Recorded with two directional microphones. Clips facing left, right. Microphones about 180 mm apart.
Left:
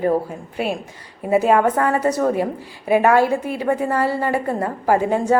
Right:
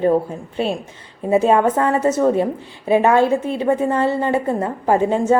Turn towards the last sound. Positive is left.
turn(degrees=-25)  # may be behind; listen again after turning